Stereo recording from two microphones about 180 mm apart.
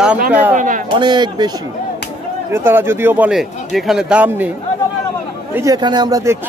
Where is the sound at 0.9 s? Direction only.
25° right (ahead or behind).